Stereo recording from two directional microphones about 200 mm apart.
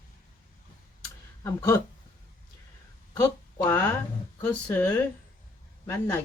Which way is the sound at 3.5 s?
15° left (ahead or behind).